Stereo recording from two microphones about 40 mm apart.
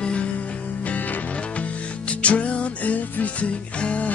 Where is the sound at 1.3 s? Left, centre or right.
Left.